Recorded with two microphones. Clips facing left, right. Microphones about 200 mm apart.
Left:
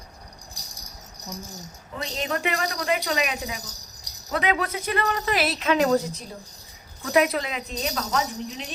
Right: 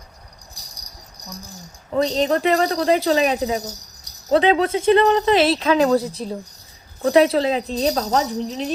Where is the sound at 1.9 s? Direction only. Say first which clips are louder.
Right 11 dB; 35° right (ahead or behind).